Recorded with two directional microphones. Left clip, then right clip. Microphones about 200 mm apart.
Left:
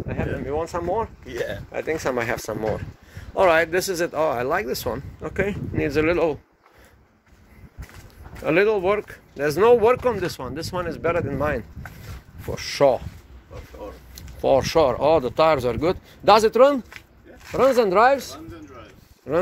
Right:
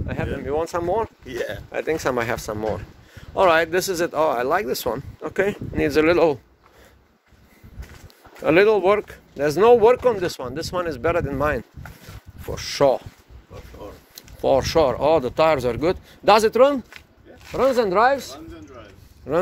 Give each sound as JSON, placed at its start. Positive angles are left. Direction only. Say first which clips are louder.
{"t": 0.1, "sound": "speech", "louder": "right 2 dB", "side_deg": -20}
{"t": 5.4, "sound": "speech", "louder": "right 3 dB", "side_deg": -30}
{"t": 8.5, "sound": "speech", "louder": "right 3 dB", "side_deg": -25}
{"t": 14.1, "sound": "speech", "louder": "even", "side_deg": -5}
{"t": 17.4, "sound": "speech", "louder": "left 1 dB", "side_deg": 10}
{"t": 19.2, "sound": "speech", "louder": "right 1 dB", "side_deg": -5}